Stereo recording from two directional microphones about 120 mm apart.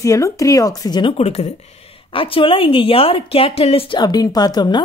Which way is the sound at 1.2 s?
60° left (ahead or behind).